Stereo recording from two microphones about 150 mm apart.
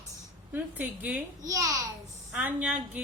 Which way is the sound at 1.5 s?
20° right (ahead or behind).